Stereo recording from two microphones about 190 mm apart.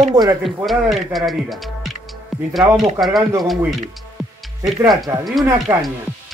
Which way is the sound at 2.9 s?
Centre (ahead or behind).